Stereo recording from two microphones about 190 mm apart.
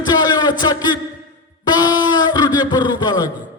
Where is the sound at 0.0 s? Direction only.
20° left (ahead or behind).